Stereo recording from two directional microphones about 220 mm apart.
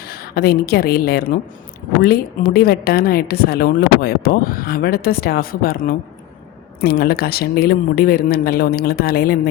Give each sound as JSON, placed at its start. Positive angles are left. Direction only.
{"t": 0.1, "sound": "a woman's voice", "side_deg": 45}